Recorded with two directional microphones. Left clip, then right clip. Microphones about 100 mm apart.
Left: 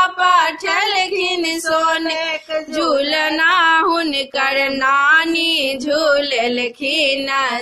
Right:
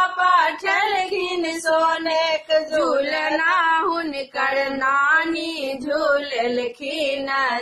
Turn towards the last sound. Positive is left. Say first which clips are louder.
# left 5 dB
turn(degrees=35)  # may be behind; listen again after turning